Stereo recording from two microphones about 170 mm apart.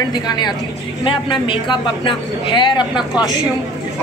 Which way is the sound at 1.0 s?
30° left (ahead or behind).